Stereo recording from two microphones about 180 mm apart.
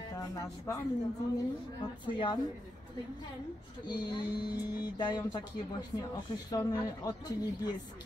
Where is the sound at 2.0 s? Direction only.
25° left (ahead or behind).